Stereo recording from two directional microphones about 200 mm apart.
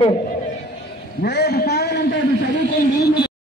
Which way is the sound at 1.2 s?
55° left (ahead or behind).